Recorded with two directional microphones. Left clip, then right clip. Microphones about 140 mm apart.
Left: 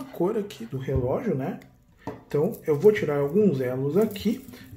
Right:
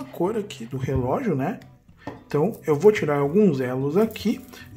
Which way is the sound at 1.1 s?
45° right (ahead or behind).